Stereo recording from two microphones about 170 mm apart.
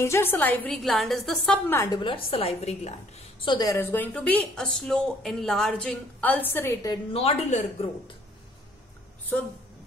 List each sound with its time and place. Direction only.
0.0 s a woman's voice: 15° left (ahead or behind)
2.0 s a woman's voice: 30° left (ahead or behind); by 6.9 s 15° left (ahead or behind)
6.9 s speech: 35° left (ahead or behind)